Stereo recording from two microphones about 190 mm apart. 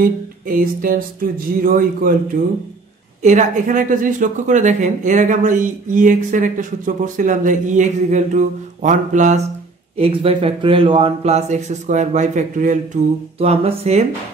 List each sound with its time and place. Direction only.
0.0 s a sound: 50° right (ahead or behind)
3.2 s speech: 40° right (ahead or behind)
9.9 s speech: 30° right (ahead or behind)